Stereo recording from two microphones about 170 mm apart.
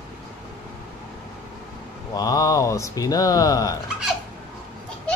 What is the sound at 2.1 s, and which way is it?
Speech, 20° left (ahead or behind).